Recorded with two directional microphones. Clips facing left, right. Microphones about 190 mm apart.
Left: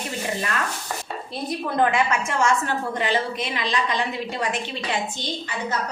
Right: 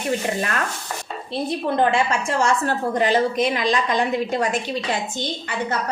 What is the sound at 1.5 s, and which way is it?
A woman's voice, 30° right (ahead or behind).